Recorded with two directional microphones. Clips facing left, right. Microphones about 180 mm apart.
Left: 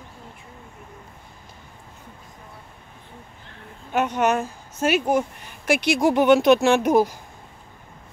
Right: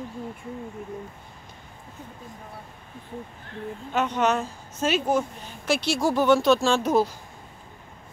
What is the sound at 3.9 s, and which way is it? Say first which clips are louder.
Speech: left 3 dB; 10° left (ahead or behind).